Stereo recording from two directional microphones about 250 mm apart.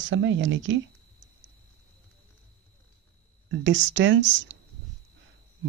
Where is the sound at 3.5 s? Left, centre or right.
Right.